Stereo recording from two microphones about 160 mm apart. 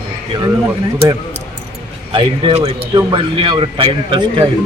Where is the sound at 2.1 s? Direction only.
35° right (ahead or behind).